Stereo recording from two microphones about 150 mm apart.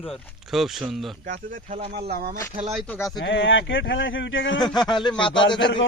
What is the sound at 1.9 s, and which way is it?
Speech, 90° right.